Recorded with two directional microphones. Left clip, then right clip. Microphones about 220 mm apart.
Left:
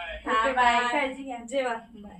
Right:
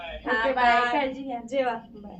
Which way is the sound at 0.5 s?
20° left (ahead or behind).